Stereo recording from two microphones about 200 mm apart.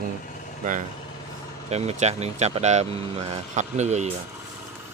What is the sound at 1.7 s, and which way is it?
Speech, 35° right (ahead or behind).